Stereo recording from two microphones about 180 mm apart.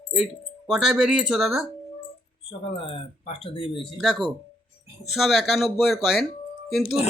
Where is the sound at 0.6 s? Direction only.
Centre (ahead or behind).